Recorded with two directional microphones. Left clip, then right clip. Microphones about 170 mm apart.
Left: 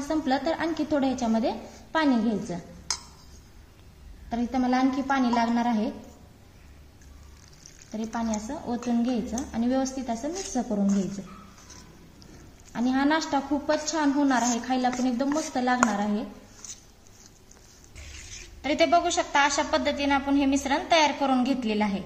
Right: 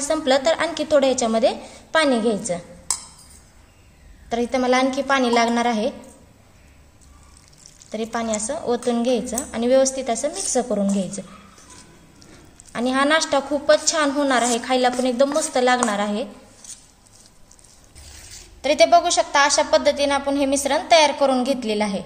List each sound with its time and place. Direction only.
0.1 s a woman's voice: 50° right (ahead or behind)
4.3 s a woman's voice: 50° right (ahead or behind)
8.0 s a woman's voice: 55° right (ahead or behind)
12.7 s a woman's voice: 50° right (ahead or behind)
18.6 s a woman's voice: 50° right (ahead or behind)